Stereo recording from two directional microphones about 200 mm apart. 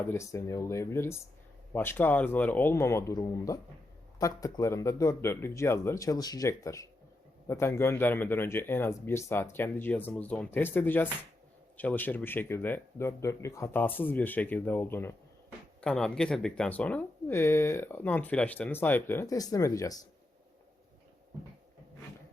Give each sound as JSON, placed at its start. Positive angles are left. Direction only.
{"t": 0.1, "sound": "speech", "side_deg": 15}